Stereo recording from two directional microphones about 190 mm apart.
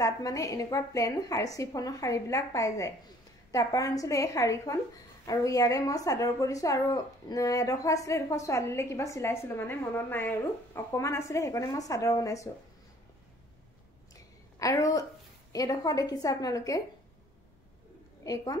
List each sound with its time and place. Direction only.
0.0 s a woman's voice: 20° left (ahead or behind)
14.6 s a woman's voice: 20° left (ahead or behind)
18.2 s a woman's voice: 20° left (ahead or behind)